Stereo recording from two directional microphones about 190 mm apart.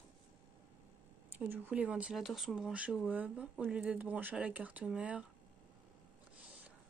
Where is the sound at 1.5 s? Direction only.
10° right (ahead or behind).